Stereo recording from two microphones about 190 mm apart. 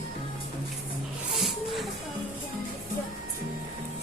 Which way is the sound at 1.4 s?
Centre (ahead or behind).